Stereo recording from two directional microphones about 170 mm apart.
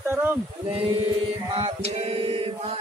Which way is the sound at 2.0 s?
35° right (ahead or behind).